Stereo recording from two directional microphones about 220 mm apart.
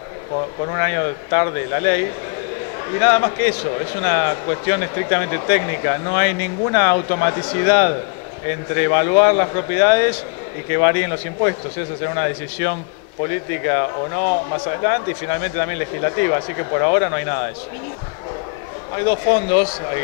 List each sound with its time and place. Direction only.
0.7 s speech: 20° left (ahead or behind)
3.0 s speech: 20° left (ahead or behind)
12.6 s speech: 15° left (ahead or behind)
19.0 s speech: 15° left (ahead or behind)